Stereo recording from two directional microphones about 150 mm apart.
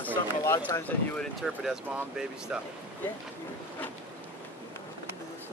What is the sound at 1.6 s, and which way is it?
Speech, 5° right (ahead or behind).